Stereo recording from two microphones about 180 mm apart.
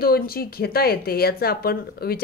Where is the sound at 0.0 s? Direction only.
55° left (ahead or behind).